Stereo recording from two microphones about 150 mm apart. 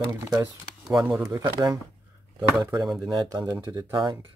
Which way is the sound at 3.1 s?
25° right (ahead or behind).